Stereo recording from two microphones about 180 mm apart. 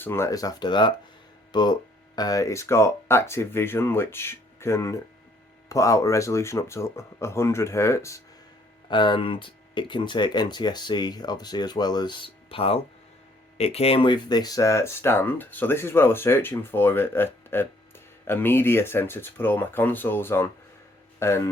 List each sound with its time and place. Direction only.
0.0 s speech: 15° left (ahead or behind)
8.9 s speech: 25° left (ahead or behind)